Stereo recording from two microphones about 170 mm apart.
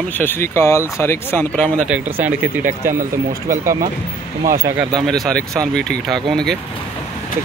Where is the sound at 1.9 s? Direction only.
10° right (ahead or behind).